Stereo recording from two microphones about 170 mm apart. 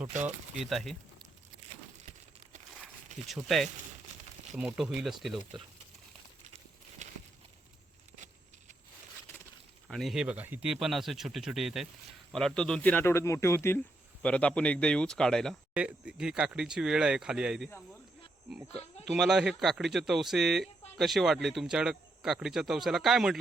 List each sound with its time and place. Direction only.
0.1 s speech: 45° right (ahead or behind)
0.6 s speech: centre (ahead or behind)
2.7 s a sound: centre (ahead or behind)
4.5 s speech: 5° right (ahead or behind)
9.9 s speech: centre (ahead or behind)
19.0 s speech: centre (ahead or behind)